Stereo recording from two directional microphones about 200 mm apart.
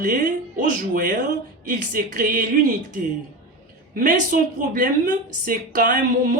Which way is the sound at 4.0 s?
45° right (ahead or behind).